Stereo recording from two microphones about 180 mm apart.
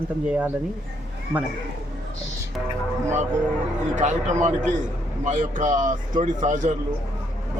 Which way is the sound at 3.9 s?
45° right (ahead or behind).